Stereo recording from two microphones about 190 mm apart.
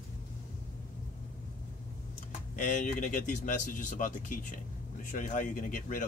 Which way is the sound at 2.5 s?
40° left (ahead or behind).